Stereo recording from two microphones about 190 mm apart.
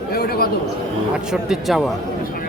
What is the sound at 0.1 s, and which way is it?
Chatter, 55° left (ahead or behind).